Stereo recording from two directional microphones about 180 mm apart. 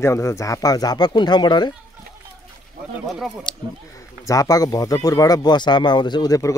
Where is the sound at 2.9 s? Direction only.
Centre (ahead or behind).